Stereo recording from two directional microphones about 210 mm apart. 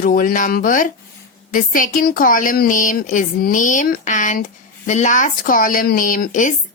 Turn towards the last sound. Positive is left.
turn(degrees=40)  # may be behind; listen again after turning